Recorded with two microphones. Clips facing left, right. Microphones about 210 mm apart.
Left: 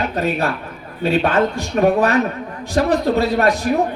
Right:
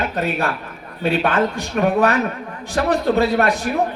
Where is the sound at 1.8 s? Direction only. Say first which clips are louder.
Left 2 dB; 40° left (ahead or behind).